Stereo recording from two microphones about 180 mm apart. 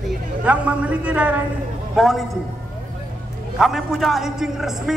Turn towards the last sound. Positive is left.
turn(degrees=0)  # may be behind; listen again after turning